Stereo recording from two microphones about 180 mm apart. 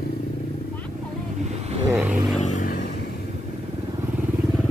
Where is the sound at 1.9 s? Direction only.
5° right (ahead or behind).